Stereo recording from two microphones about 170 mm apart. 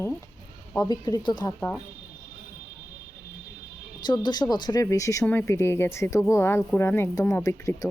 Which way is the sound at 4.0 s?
25° left (ahead or behind).